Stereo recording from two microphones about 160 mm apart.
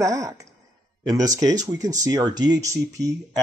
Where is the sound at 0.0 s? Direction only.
20° right (ahead or behind).